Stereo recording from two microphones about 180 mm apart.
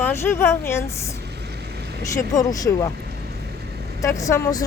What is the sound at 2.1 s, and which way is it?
Speech, 20° left (ahead or behind).